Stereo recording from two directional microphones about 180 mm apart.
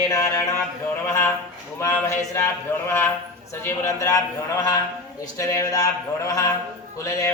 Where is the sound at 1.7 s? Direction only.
15° left (ahead or behind).